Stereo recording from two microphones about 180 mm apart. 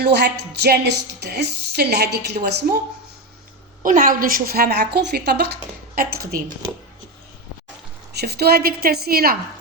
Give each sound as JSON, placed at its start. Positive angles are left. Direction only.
{"t": 0.0, "sound": "a woman's voice", "side_deg": -70}
{"t": 3.8, "sound": "a woman's voice", "side_deg": -50}
{"t": 8.1, "sound": "a woman's voice", "side_deg": -65}